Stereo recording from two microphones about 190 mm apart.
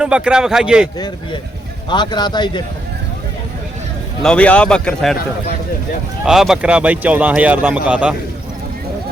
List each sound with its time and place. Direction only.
0.0 s a man's voice: 5° right (ahead or behind)
0.9 s a man's voice: 20° left (ahead or behind)
4.2 s a man's voice: 5° left (ahead or behind)
6.2 s speech: centre (ahead or behind)